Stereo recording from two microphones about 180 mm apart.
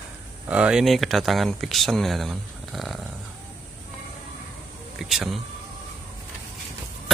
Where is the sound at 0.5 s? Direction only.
5° right (ahead or behind).